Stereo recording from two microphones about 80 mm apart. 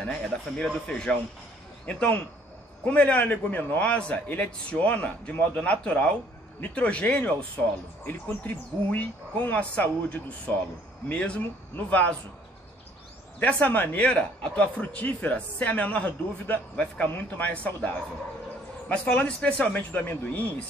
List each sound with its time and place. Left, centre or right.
0.0 s a man's voice: centre
13.4 s a man's voice: centre